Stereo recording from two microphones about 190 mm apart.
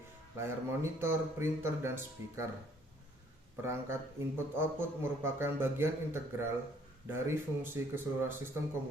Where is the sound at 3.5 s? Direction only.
15° right (ahead or behind).